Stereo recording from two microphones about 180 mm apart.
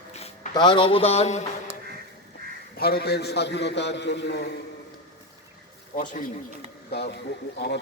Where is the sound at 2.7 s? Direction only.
60° left (ahead or behind).